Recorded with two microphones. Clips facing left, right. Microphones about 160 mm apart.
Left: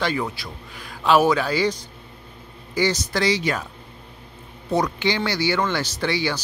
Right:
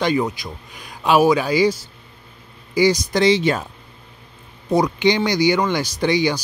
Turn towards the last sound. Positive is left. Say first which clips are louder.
# right 5 dB
turn(degrees=-15)  # may be behind; listen again after turning